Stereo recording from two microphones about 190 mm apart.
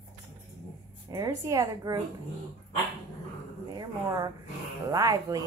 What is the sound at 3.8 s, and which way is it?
Speech, 20° right (ahead or behind).